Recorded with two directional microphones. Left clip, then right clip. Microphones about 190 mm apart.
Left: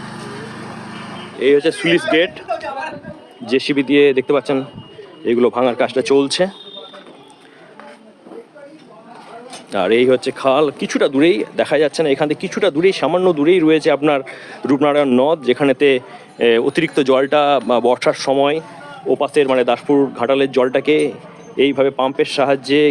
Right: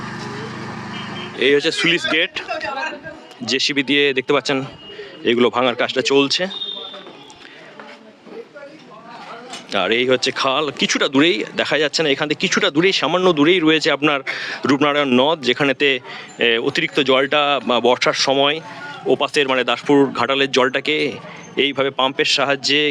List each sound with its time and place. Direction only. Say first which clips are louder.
1.4 s speech: left 2 dB; centre (ahead or behind)
2.5 s a woman's voice: left 1 dB; 40° left (ahead or behind)
3.4 s speech: left 1 dB; centre (ahead or behind)
9.7 s speech: left 3 dB; 20° left (ahead or behind)